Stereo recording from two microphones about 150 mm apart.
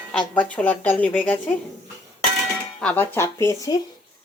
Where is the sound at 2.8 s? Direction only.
10° left (ahead or behind).